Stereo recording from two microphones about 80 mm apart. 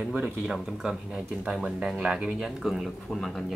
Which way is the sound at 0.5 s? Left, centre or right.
Centre.